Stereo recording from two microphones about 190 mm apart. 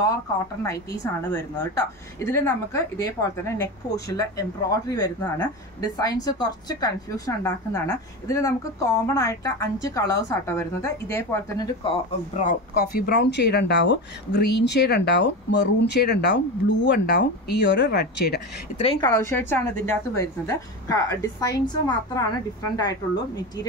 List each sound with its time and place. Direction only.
1.6 s a woman's voice: 15° left (ahead or behind); by 12.5 s 35° left (ahead or behind)
12.9 s speech: 55° left (ahead or behind)
18.8 s a woman's voice: 30° left (ahead or behind)
19.1 s a woman's voice: 10° left (ahead or behind)